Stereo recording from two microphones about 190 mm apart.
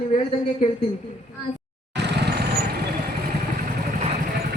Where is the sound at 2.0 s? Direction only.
60° right (ahead or behind).